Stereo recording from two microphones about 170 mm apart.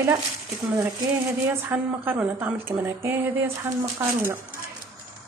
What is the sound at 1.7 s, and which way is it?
A woman's voice, 10° right (ahead or behind).